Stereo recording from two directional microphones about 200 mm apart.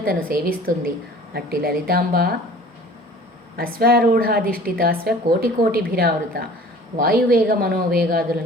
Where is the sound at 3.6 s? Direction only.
50° right (ahead or behind).